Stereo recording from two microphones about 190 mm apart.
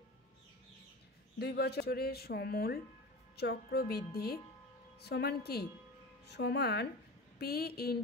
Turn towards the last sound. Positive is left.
turn(degrees=55)  # may be behind; listen again after turning